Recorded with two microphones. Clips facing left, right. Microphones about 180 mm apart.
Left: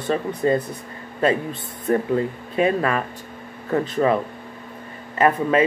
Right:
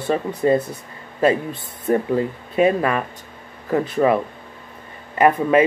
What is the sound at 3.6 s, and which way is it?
Speech, 10° right (ahead or behind).